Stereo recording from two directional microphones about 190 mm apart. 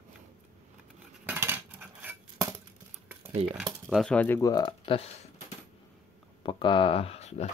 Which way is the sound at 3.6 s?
Centre (ahead or behind).